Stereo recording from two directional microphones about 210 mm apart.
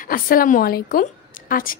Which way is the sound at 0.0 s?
40° left (ahead or behind).